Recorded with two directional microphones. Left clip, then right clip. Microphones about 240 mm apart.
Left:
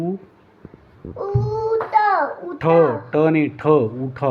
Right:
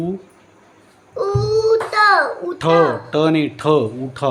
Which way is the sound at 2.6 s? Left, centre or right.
Centre.